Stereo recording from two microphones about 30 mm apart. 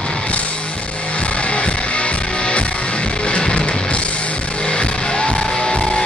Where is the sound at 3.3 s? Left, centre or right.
Left.